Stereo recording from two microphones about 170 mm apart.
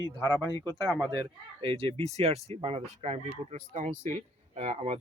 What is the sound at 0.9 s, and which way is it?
Speech, 5° right (ahead or behind).